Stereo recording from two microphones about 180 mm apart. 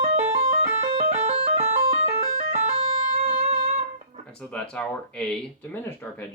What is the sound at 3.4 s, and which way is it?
Guitar, 35° right (ahead or behind).